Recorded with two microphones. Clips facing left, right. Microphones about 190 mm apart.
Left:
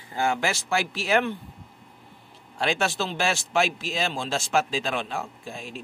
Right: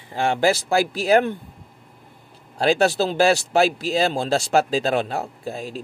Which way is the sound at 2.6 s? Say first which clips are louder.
Right 8 dB; 35° right (ahead or behind).